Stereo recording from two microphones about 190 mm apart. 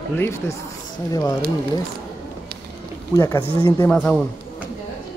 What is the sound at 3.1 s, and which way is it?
Speech, 15° left (ahead or behind).